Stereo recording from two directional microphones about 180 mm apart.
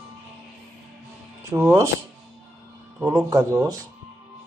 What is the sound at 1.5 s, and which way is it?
Speech, 15° right (ahead or behind).